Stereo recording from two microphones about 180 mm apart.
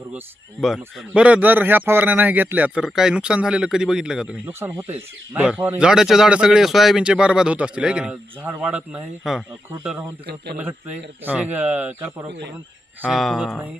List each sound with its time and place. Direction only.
0.8 s speech: 5° right (ahead or behind)
10.2 s speech: 65° right (ahead or behind)
10.6 s speech: 10° right (ahead or behind)